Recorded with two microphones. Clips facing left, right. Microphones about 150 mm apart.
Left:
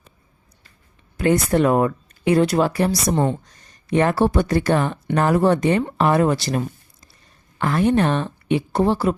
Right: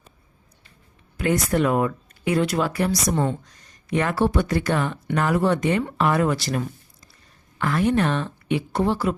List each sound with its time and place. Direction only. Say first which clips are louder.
1.1 s speech: left 4 dB; 30° left (ahead or behind)